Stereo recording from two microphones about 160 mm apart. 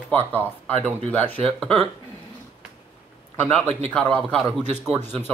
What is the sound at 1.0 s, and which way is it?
Speech, 10° left (ahead or behind).